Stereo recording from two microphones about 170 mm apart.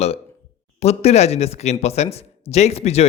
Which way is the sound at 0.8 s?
40° left (ahead or behind).